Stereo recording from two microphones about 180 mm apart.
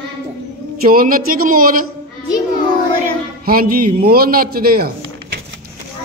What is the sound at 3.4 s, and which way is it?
Speech, 55° right (ahead or behind).